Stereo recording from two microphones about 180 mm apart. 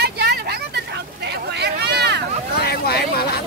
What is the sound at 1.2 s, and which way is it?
Hubbub, 70° right (ahead or behind).